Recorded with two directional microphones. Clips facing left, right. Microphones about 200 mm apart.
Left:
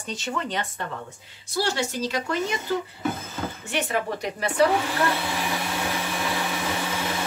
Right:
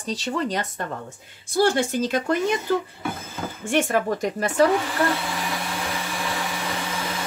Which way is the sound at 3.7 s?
50° right (ahead or behind).